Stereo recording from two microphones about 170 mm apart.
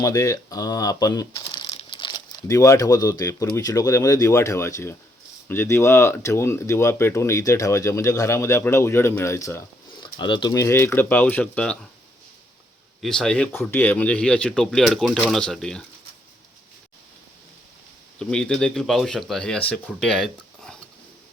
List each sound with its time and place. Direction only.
0.0 s speech: 20° left (ahead or behind)
9.9 s speech: 25° left (ahead or behind); by 11.9 s 5° left (ahead or behind)
13.0 s speech: 5° left (ahead or behind)
18.2 s speech: 5° left (ahead or behind)